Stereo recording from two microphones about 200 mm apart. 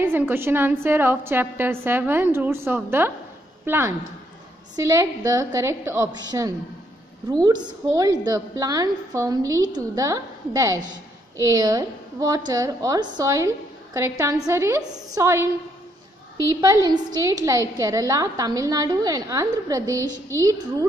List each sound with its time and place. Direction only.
0.0 s a woman's voice: 10° right (ahead or behind)